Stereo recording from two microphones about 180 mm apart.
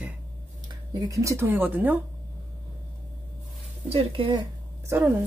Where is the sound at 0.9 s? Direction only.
20° right (ahead or behind).